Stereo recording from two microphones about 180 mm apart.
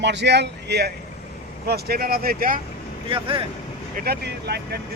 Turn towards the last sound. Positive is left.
turn(degrees=-65)  # may be behind; listen again after turning